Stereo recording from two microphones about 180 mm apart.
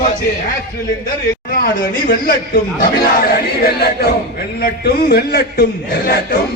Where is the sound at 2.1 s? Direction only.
50° left (ahead or behind).